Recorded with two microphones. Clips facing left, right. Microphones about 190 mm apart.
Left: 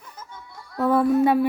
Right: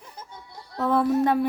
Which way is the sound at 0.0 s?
30° right (ahead or behind).